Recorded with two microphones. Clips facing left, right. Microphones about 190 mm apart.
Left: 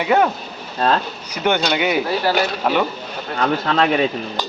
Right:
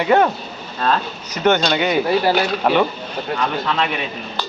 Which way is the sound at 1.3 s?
10° left (ahead or behind).